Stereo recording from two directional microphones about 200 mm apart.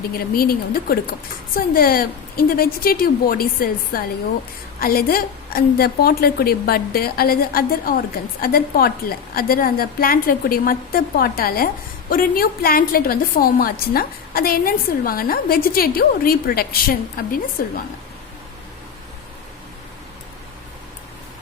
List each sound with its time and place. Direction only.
0.2 s a woman's voice: 50° left (ahead or behind)